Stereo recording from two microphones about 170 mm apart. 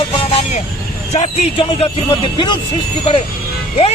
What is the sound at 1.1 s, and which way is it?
Speech, 35° left (ahead or behind).